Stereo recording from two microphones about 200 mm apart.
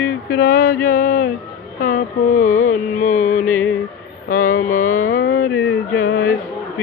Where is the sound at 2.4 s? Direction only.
90° left.